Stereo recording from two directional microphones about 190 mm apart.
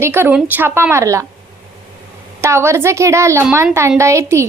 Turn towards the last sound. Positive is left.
turn(degrees=-15)  # may be behind; listen again after turning